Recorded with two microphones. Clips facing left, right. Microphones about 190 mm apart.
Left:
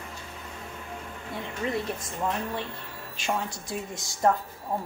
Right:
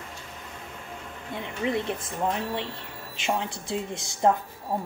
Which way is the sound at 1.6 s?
20° right (ahead or behind).